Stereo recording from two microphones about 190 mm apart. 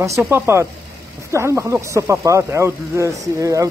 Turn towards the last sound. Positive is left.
turn(degrees=-15)  # may be behind; listen again after turning